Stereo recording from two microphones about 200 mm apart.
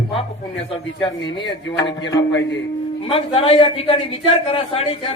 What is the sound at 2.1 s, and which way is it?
Speech, 60° left (ahead or behind).